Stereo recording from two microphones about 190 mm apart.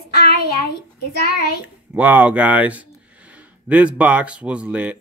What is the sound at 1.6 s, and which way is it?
Speech, 10° right (ahead or behind).